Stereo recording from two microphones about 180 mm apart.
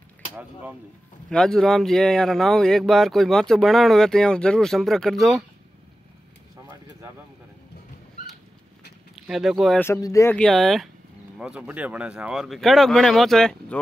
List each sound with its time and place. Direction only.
0.3 s speech: 10° right (ahead or behind)
1.3 s speech: 5° left (ahead or behind)
9.1 s speech: centre (ahead or behind)
9.8 s speech: 15° left (ahead or behind)
10.3 s speech: centre (ahead or behind)